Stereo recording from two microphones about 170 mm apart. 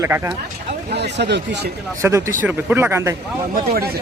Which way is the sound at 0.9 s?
85° right.